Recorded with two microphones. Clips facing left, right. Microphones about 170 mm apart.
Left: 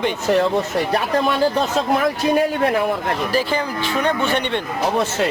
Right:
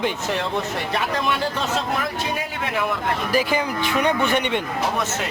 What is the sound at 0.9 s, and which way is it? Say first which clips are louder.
Speech: left 4 dB; 35° left (ahead or behind).